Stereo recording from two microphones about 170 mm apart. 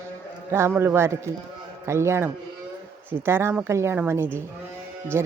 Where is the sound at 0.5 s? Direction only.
15° right (ahead or behind).